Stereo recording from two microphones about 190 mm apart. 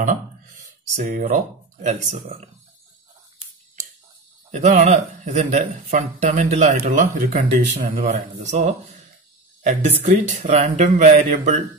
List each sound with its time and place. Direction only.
0.9 s a man's voice: 40° right (ahead or behind)
4.5 s a man's voice: 40° right (ahead or behind)